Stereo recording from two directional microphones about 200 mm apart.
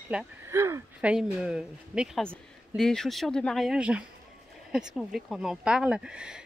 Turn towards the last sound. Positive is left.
turn(degrees=-5)  # may be behind; listen again after turning